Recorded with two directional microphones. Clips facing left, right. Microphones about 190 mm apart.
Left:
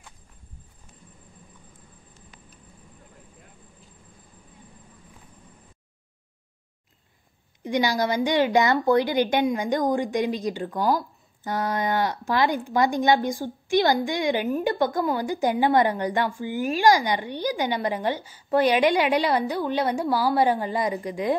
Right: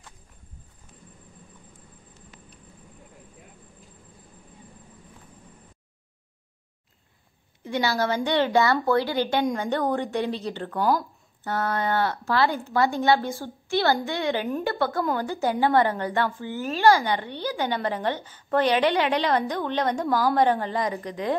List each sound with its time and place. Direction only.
7.6 s a woman's voice: 15° left (ahead or behind)